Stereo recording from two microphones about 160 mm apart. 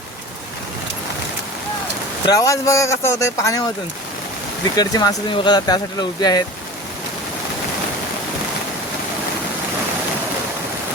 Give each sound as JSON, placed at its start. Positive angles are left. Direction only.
{"t": 2.2, "sound": "speech", "side_deg": 20}
{"t": 4.8, "sound": "speech", "side_deg": 25}